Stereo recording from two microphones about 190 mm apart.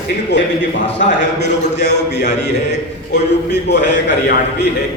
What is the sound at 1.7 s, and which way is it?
Speech, 65° left (ahead or behind).